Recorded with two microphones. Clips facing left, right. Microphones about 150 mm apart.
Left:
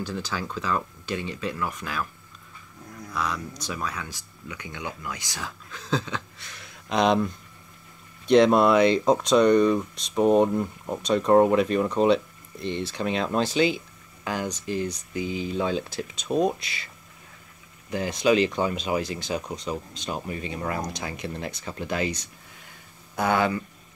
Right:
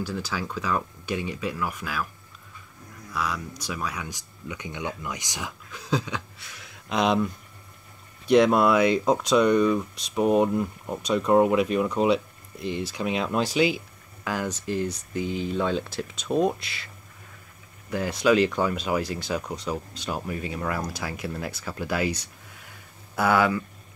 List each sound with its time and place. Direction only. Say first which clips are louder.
0.0 s speech: right 1 dB; 10° right (ahead or behind)
3.1 s speech: even; 5° right (ahead or behind)
8.3 s speech: left 1 dB; 5° right (ahead or behind)
17.9 s speech: even; 5° right (ahead or behind)
18.5 s speech: right 1 dB; 20° left (ahead or behind)
19.0 s speech: even; 10° right (ahead or behind)